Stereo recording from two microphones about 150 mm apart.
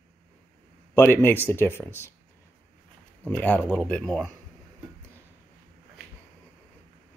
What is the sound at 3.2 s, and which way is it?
A man's voice, 10° left (ahead or behind).